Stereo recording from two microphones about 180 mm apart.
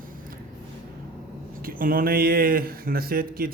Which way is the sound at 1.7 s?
50° right (ahead or behind).